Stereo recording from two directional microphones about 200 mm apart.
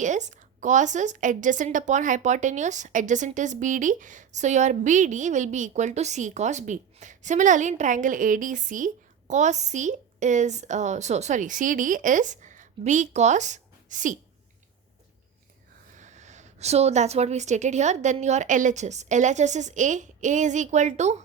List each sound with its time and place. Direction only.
0.0 s a woman's voice: 35° right (ahead or behind)
16.0 s a woman's voice: 35° right (ahead or behind)